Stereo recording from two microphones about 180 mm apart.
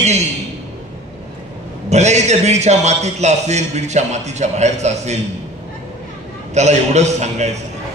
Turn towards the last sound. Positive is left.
turn(degrees=-40)  # may be behind; listen again after turning